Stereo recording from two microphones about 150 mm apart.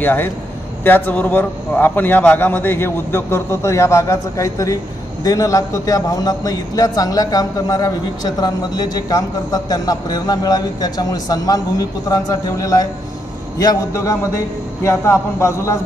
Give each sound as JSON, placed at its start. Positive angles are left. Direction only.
{"t": 0.0, "sound": "a man's voice", "side_deg": 10}